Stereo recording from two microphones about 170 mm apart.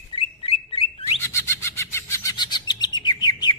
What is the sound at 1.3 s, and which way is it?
Bird, 15° left (ahead or behind).